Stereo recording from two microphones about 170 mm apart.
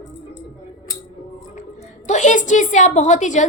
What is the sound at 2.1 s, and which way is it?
A woman's voice, 45° left (ahead or behind).